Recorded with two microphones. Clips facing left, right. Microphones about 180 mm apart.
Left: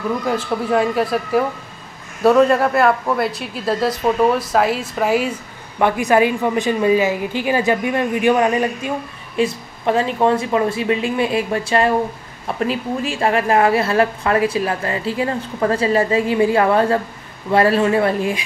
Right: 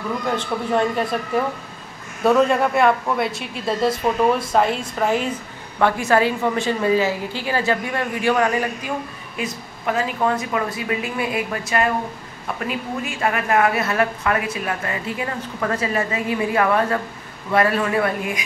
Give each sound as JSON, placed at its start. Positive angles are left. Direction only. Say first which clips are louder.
{"t": 0.4, "sound": "a woman's voice", "louder": "left 3 dB", "side_deg": 5}